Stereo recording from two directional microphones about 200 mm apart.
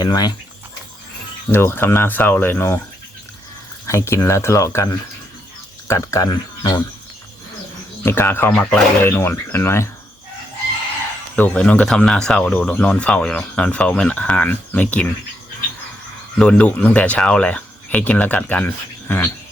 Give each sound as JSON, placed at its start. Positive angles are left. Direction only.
{"t": 0.0, "sound": "speech", "side_deg": 20}
{"t": 1.5, "sound": "speech", "side_deg": 10}
{"t": 3.8, "sound": "speech", "side_deg": 15}
{"t": 8.0, "sound": "speech", "side_deg": 10}
{"t": 11.3, "sound": "speech", "side_deg": 5}
{"t": 16.4, "sound": "speech", "side_deg": 5}